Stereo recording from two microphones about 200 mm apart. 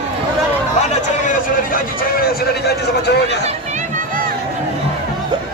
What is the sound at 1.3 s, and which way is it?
Vehicle, 45° left (ahead or behind).